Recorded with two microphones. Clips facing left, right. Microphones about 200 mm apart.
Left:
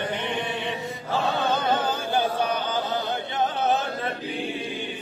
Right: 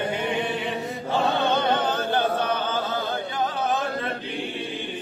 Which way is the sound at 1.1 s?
5° left (ahead or behind).